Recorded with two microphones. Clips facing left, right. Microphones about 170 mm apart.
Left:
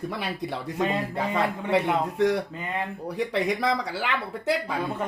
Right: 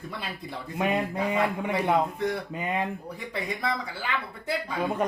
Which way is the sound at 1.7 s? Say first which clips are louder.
Left 3 dB; 80° left.